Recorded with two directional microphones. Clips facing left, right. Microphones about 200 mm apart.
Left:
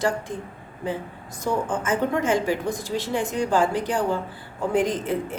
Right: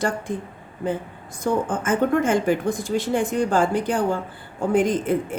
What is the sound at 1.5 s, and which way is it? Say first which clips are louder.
Speech: right 2 dB; 50° right (ahead or behind).